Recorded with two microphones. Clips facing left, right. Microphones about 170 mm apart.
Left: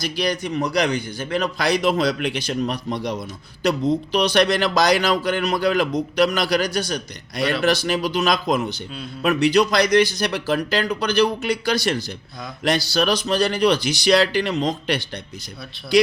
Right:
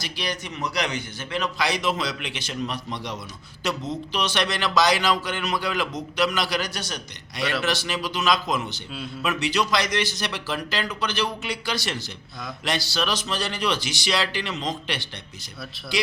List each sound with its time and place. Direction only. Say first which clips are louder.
0.2 s a man's voice: left 7 dB; 40° left (ahead or behind)